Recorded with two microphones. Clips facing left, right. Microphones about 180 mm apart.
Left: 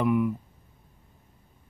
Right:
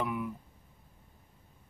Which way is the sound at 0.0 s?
55° left (ahead or behind).